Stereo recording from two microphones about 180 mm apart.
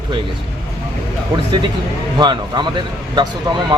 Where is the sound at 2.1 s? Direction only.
25° right (ahead or behind).